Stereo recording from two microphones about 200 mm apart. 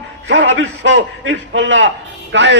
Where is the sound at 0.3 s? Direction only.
70° right (ahead or behind).